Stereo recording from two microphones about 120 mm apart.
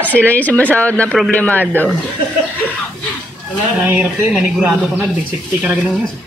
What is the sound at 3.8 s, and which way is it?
Speech, 15° right (ahead or behind).